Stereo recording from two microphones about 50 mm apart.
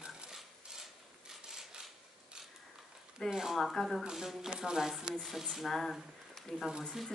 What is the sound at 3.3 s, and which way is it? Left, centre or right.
Speech, centre.